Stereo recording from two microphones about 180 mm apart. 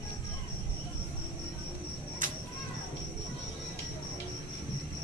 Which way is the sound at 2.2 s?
45° right (ahead or behind).